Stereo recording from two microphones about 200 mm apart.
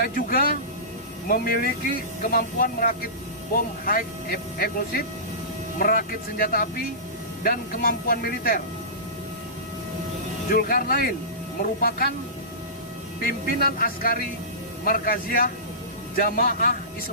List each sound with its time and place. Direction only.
0.0 s speech: 45° left (ahead or behind)
10.5 s speech: 45° left (ahead or behind)
13.2 s speech: 45° left (ahead or behind)